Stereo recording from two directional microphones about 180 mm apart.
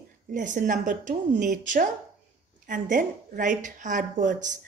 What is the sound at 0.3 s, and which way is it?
A woman's voice, 45° right (ahead or behind).